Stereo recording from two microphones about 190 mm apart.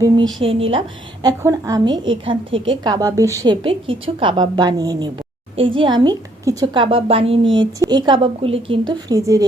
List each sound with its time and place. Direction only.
0.4 s a woman's voice: 30° right (ahead or behind)
1.2 s a woman's voice: 20° right (ahead or behind)